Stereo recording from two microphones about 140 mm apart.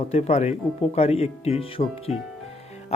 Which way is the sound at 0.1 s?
50° left (ahead or behind).